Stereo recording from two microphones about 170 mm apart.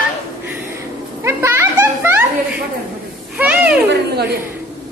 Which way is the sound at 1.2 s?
15° right (ahead or behind).